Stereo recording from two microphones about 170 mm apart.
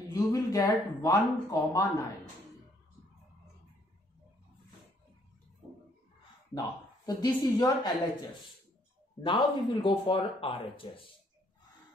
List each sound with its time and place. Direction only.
0.1 s speech: 20° left (ahead or behind)
7.1 s speech: 25° left (ahead or behind)
9.2 s speech: 30° left (ahead or behind)